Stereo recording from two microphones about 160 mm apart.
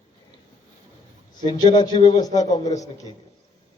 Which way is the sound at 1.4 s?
25° left (ahead or behind).